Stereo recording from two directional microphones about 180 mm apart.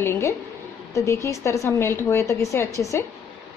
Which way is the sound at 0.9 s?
15° left (ahead or behind).